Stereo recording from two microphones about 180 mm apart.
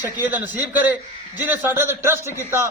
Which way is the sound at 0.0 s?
10° right (ahead or behind).